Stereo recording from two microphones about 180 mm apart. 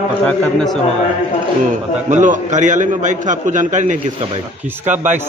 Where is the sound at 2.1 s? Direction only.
45° right (ahead or behind).